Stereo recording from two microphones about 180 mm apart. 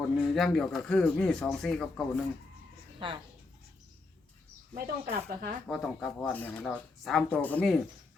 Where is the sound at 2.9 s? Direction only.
30° right (ahead or behind).